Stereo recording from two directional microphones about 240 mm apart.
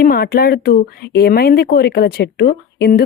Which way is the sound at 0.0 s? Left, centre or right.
Left.